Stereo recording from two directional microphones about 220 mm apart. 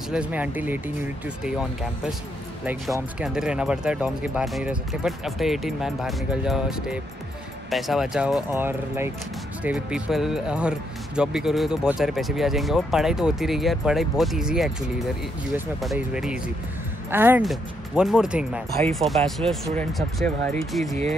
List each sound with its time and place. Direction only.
0.1 s speech: 5° right (ahead or behind)